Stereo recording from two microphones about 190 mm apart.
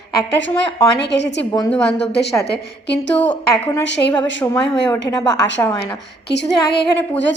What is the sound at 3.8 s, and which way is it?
Speech, 70° left (ahead or behind).